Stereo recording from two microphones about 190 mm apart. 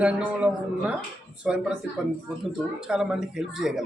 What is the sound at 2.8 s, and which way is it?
A man's voice, 5° right (ahead or behind).